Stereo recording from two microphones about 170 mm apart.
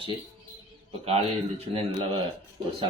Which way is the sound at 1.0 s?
35° right (ahead or behind).